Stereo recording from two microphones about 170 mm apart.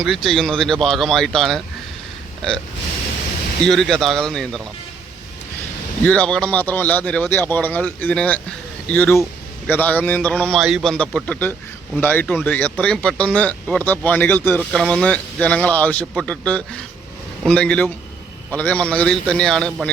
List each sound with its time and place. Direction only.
0.0 s speech: centre (ahead or behind)
3.6 s speech: centre (ahead or behind)
6.1 s speech: 5° left (ahead or behind)